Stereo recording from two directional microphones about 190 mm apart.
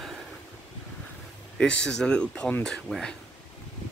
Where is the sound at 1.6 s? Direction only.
5° left (ahead or behind).